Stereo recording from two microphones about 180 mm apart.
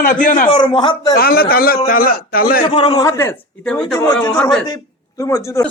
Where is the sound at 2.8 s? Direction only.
30° left (ahead or behind).